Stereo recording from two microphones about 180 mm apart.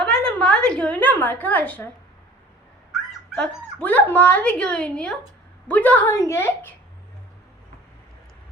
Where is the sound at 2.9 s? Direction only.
Centre (ahead or behind).